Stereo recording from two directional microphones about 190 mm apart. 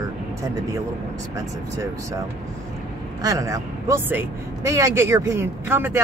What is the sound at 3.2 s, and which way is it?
A man's voice, 15° right (ahead or behind).